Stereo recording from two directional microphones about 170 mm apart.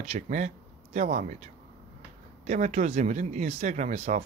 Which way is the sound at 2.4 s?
45° right (ahead or behind).